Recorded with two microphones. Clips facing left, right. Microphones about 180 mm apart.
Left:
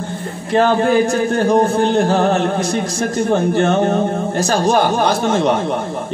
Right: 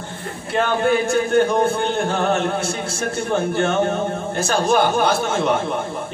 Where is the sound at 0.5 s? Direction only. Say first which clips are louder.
Left 5 dB; 35° left (ahead or behind).